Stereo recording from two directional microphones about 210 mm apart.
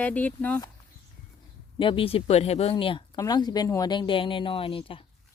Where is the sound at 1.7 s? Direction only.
25° left (ahead or behind).